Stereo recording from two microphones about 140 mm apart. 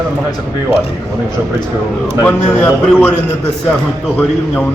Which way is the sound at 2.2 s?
15° left (ahead or behind).